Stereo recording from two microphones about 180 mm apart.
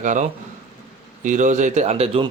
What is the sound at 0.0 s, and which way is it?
Speech, 45° right (ahead or behind).